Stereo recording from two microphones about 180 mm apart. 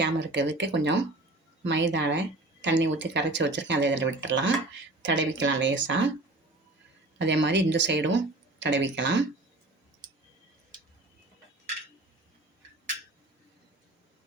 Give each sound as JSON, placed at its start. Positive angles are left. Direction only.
{"t": 0.0, "sound": "speech", "side_deg": -80}
{"t": 7.2, "sound": "speech", "side_deg": -80}